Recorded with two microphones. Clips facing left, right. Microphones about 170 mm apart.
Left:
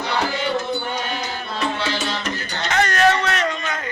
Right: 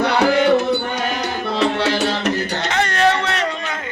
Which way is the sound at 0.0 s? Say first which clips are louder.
Right 8 dB; 70° right (ahead or behind).